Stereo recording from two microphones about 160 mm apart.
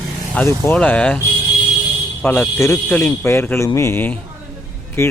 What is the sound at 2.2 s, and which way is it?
Speech, 10° left (ahead or behind).